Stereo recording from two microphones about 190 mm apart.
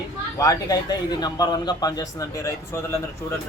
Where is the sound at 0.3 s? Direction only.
20° left (ahead or behind).